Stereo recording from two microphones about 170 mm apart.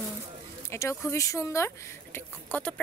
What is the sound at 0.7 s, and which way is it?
Speech, 15° left (ahead or behind).